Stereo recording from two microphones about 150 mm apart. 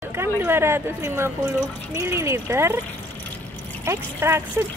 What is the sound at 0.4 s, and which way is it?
Speech, 15° right (ahead or behind).